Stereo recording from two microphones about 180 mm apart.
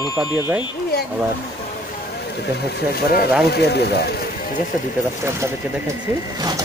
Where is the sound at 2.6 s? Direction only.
65° left (ahead or behind).